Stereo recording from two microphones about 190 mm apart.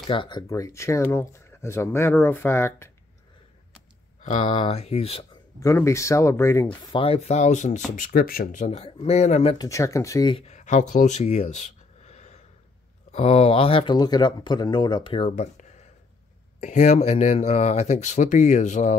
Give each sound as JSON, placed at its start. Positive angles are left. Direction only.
{"t": 0.0, "sound": "speech", "side_deg": 25}
{"t": 4.2, "sound": "speech", "side_deg": 35}
{"t": 5.6, "sound": "speech", "side_deg": 15}
{"t": 9.6, "sound": "speech", "side_deg": 15}
{"t": 10.3, "sound": "speech", "side_deg": 35}